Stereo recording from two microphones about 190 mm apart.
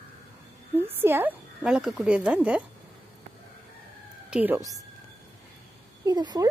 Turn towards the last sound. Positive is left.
turn(degrees=-20)  # may be behind; listen again after turning